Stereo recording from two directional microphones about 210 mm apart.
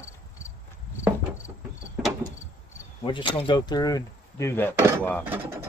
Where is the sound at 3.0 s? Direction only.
25° left (ahead or behind).